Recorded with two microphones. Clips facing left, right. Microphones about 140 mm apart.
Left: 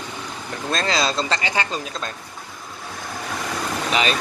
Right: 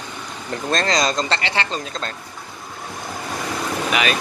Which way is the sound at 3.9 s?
30° left (ahead or behind).